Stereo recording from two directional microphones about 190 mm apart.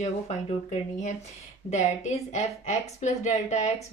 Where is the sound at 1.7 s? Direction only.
35° left (ahead or behind).